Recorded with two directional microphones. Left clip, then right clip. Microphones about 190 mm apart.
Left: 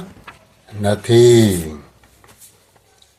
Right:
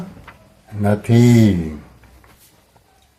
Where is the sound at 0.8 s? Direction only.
15° left (ahead or behind).